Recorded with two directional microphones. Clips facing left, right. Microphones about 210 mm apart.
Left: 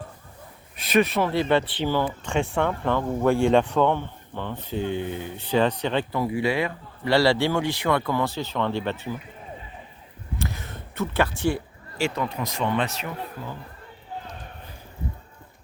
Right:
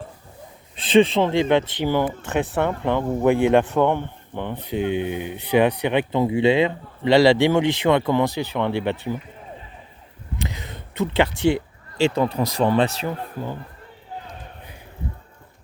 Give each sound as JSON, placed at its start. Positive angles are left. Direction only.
{"t": 0.8, "sound": "speech", "side_deg": -30}
{"t": 10.3, "sound": "a sound", "side_deg": -20}
{"t": 11.4, "sound": "speech", "side_deg": -25}